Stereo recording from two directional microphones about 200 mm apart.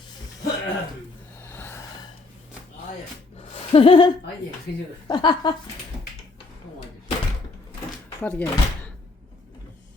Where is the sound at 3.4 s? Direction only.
30° left (ahead or behind).